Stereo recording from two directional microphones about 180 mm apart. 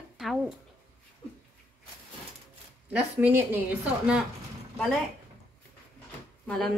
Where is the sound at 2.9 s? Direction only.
10° right (ahead or behind).